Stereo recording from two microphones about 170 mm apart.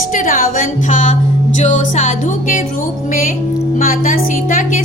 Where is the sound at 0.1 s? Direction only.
50° left (ahead or behind).